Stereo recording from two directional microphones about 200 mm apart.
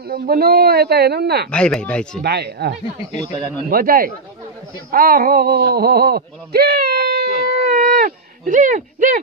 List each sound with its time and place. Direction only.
0.0 s speech: 50° right (ahead or behind)
1.5 s speech: 5° left (ahead or behind)
2.2 s speech: 55° right (ahead or behind)
3.7 s speech: 45° right (ahead or behind)